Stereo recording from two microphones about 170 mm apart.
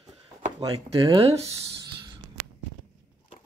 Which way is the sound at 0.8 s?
30° right (ahead or behind).